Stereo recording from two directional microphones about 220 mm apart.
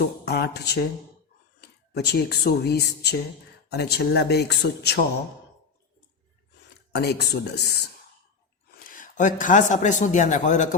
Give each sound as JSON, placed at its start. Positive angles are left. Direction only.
{"t": 0.0, "sound": "speech", "side_deg": 45}
{"t": 6.9, "sound": "speech", "side_deg": 50}